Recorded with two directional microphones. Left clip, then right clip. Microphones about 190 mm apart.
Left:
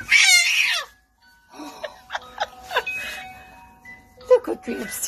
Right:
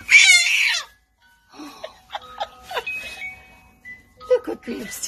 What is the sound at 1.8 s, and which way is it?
Music, 15° left (ahead or behind).